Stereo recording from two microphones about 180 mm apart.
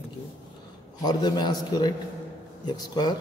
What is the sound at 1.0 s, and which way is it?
Speech, 20° left (ahead or behind).